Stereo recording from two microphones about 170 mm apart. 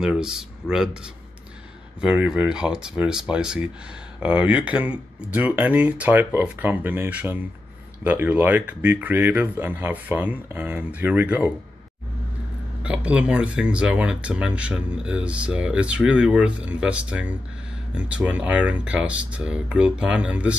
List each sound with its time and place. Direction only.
0.0 s speech: 5° right (ahead or behind)
12.8 s speech: 5° right (ahead or behind)